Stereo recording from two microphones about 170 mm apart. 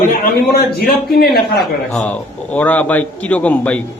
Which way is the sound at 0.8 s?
65° left (ahead or behind).